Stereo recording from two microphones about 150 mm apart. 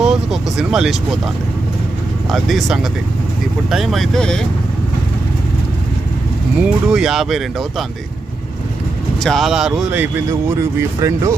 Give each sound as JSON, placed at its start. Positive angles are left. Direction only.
{"t": 0.0, "sound": "vehicle", "side_deg": -5}
{"t": 2.3, "sound": "speech", "side_deg": 0}
{"t": 6.6, "sound": "speech", "side_deg": -5}
{"t": 9.2, "sound": "speech", "side_deg": 0}
{"t": 10.8, "sound": "speech", "side_deg": -20}